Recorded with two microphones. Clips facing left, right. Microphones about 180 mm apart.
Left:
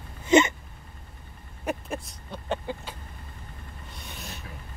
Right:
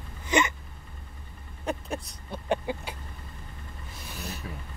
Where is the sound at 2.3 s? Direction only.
10° right (ahead or behind).